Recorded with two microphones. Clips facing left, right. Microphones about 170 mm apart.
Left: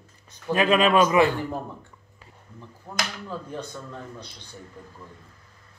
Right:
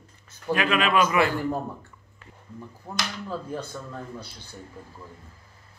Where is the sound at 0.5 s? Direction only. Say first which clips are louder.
Left 4 dB; 30° left (ahead or behind).